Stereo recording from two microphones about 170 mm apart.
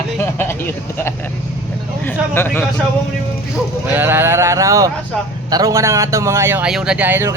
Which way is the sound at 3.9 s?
15° right (ahead or behind).